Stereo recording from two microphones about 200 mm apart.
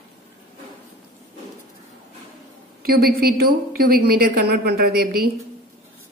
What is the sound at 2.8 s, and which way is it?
A woman's voice, 50° right (ahead or behind).